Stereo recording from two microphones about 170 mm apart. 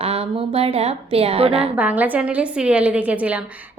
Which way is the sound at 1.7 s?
10° right (ahead or behind).